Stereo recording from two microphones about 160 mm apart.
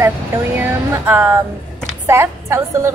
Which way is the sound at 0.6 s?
10° right (ahead or behind).